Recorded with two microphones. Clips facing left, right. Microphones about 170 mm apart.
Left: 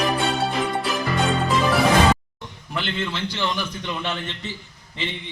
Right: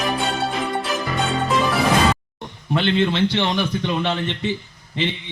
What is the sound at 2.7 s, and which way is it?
A man's voice, 65° right (ahead or behind).